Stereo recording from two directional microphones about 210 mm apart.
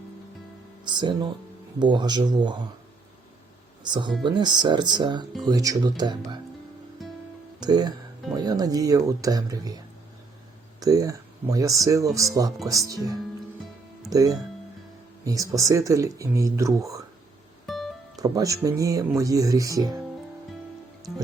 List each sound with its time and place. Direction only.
0.9 s speech: 20° right (ahead or behind)
3.8 s speech: 20° right (ahead or behind)
7.0 s music: centre (ahead or behind)
7.6 s speech: 20° right (ahead or behind)
17.7 s music: centre (ahead or behind)
18.2 s speech: 15° right (ahead or behind)